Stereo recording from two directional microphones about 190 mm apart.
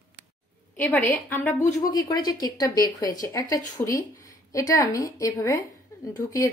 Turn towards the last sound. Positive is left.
turn(degrees=15)  # may be behind; listen again after turning